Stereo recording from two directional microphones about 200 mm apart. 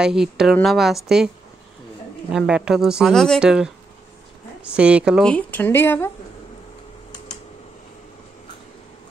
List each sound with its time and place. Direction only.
0.0 s a woman's voice: 5° right (ahead or behind)
2.3 s a woman's voice: 5° right (ahead or behind); by 6.1 s 10° left (ahead or behind)